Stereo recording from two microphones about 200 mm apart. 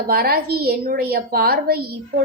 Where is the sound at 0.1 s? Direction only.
50° right (ahead or behind).